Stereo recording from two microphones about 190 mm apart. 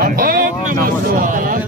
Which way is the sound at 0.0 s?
50° right (ahead or behind).